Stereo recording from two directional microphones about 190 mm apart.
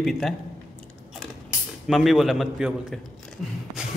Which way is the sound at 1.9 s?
Centre (ahead or behind).